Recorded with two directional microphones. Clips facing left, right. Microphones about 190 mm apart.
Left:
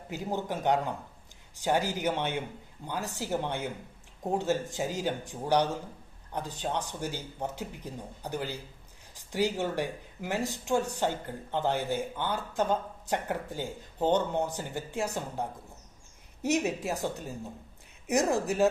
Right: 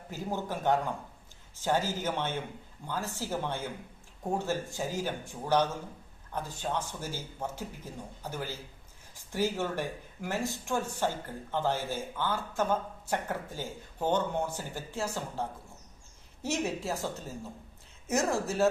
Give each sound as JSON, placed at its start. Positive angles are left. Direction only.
{"t": 0.1, "sound": "speech", "side_deg": 15}